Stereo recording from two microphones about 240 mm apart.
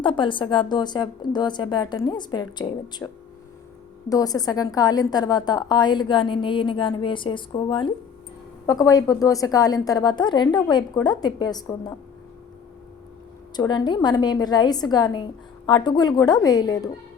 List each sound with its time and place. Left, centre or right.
0.0 s a woman's voice: left
4.1 s a woman's voice: centre
13.6 s a woman's voice: centre